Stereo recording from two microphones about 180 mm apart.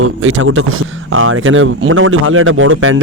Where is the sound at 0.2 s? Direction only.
90° right.